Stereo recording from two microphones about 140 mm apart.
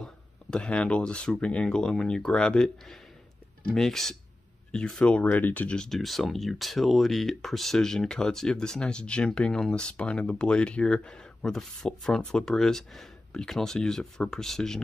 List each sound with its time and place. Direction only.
0.0 s speech: 5° left (ahead or behind)